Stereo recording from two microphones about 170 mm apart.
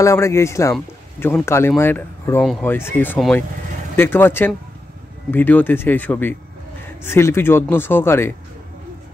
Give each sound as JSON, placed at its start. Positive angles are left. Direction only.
{"t": 0.0, "sound": "speech", "side_deg": 15}